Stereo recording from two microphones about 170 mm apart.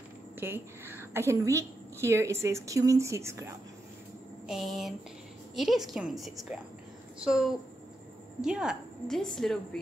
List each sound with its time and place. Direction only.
0.4 s a woman's voice: 15° right (ahead or behind)
4.5 s a woman's voice: centre (ahead or behind)